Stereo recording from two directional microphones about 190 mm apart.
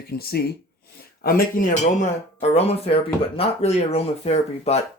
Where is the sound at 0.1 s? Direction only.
55° left (ahead or behind); by 4.8 s 35° left (ahead or behind).